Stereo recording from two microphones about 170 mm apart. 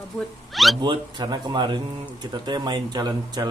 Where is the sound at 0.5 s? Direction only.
Centre (ahead or behind).